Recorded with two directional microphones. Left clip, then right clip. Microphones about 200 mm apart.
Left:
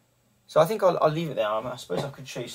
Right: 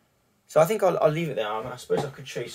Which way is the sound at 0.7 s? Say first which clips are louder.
Even; 10° right (ahead or behind).